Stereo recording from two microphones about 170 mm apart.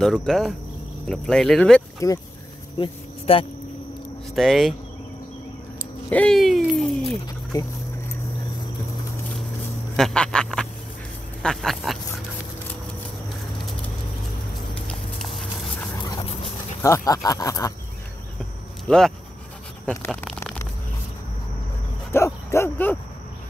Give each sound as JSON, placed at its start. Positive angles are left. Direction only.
{"t": 0.0, "sound": "speech", "side_deg": 5}
{"t": 2.0, "sound": "speech", "side_deg": 20}
{"t": 2.8, "sound": "speech", "side_deg": 30}
{"t": 4.4, "sound": "speech", "side_deg": 0}
{"t": 6.0, "sound": "a sound", "side_deg": 5}
{"t": 7.5, "sound": "speech", "side_deg": 20}
{"t": 9.9, "sound": "a sound", "side_deg": 5}
{"t": 11.4, "sound": "duck", "side_deg": 0}
{"t": 14.9, "sound": "a sound", "side_deg": 0}
{"t": 16.8, "sound": "speech", "side_deg": 20}
{"t": 18.9, "sound": "speech", "side_deg": 5}
{"t": 22.1, "sound": "bow-wow", "side_deg": 15}